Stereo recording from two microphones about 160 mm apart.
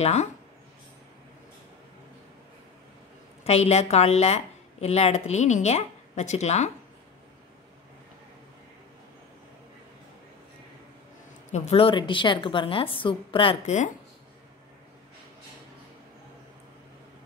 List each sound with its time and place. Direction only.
0.0 s a woman's voice: 45° left (ahead or behind)
3.4 s a woman's voice: 40° left (ahead or behind)
11.5 s a woman's voice: 40° left (ahead or behind)